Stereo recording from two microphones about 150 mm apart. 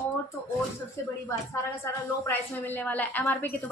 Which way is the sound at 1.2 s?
15° left (ahead or behind).